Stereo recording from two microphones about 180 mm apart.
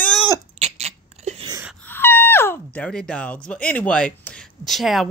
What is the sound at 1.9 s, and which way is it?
Speech, 10° left (ahead or behind).